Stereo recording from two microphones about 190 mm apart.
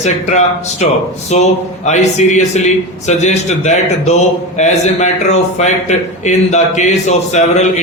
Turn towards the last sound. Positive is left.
turn(degrees=40)  # may be behind; listen again after turning